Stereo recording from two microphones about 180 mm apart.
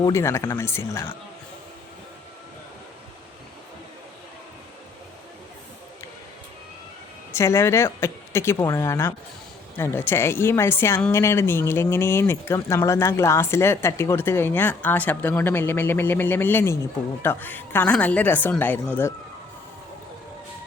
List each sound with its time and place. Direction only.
0.0 s a woman's voice: 15° left (ahead or behind)
7.3 s a woman's voice: 15° left (ahead or behind)